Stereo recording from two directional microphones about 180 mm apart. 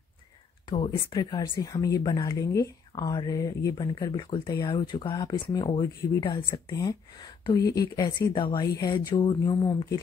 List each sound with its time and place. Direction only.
0.7 s speech: 30° left (ahead or behind)